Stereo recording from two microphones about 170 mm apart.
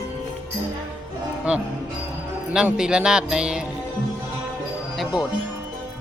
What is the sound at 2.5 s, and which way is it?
Speech, 5° right (ahead or behind).